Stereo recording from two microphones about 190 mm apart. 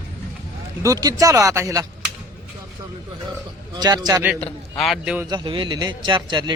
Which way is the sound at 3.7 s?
20° right (ahead or behind).